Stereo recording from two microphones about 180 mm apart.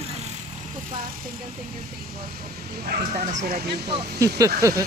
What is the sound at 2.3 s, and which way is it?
Speech, 55° right (ahead or behind).